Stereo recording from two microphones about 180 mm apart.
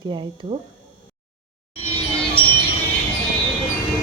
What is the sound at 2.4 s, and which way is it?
Music, 30° left (ahead or behind).